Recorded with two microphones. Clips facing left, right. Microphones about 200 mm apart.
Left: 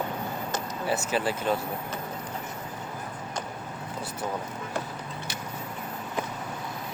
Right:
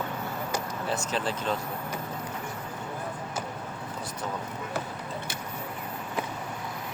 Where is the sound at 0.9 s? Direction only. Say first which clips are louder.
Left 4 dB; 5° left (ahead or behind).